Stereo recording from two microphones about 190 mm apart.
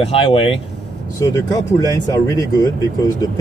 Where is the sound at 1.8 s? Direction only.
15° left (ahead or behind).